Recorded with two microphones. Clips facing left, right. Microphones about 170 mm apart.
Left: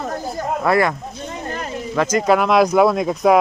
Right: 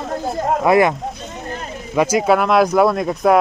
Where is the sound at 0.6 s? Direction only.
15° right (ahead or behind).